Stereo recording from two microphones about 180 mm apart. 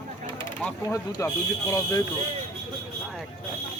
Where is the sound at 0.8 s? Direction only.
15° left (ahead or behind).